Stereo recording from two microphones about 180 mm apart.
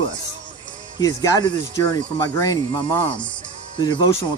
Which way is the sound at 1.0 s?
20° left (ahead or behind).